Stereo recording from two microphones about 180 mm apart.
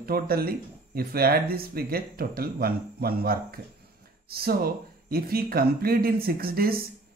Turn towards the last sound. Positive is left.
turn(degrees=-55)  # may be behind; listen again after turning